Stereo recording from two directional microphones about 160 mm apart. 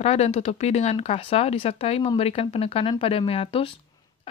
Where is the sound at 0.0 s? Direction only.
40° left (ahead or behind).